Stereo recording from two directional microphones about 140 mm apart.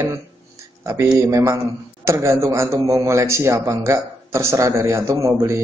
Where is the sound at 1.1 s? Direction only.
20° right (ahead or behind).